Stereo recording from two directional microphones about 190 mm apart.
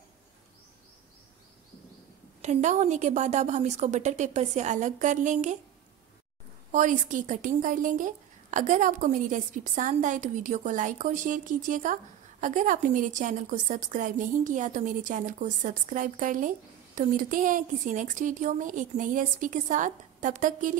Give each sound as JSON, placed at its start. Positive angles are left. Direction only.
{"t": 2.4, "sound": "a woman's voice", "side_deg": -40}
{"t": 6.7, "sound": "a woman's voice", "side_deg": -40}